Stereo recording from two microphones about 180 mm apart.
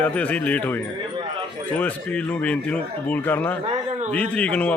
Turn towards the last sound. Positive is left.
turn(degrees=5)  # may be behind; listen again after turning